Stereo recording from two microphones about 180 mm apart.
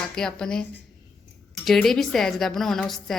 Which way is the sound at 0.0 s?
5° left (ahead or behind).